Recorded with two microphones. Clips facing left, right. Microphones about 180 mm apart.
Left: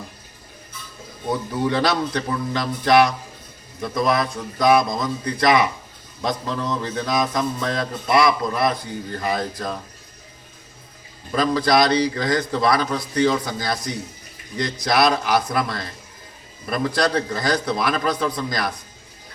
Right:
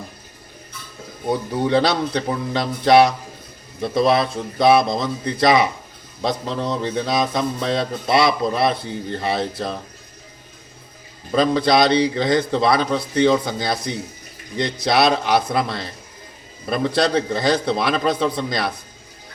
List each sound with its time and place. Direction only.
1.6 s speech: 25° right (ahead or behind)
11.3 s speech: 25° right (ahead or behind)